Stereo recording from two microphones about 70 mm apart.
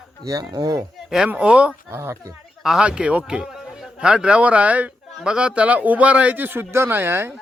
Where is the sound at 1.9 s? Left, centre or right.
Right.